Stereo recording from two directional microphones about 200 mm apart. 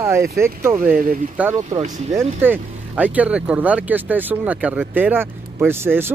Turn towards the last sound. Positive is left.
turn(degrees=-10)  # may be behind; listen again after turning